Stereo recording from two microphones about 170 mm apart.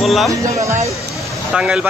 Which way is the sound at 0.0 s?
Centre (ahead or behind).